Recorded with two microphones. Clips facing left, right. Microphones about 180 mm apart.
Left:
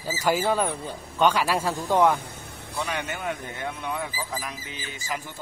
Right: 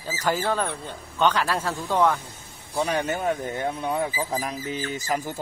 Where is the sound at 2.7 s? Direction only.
35° right (ahead or behind).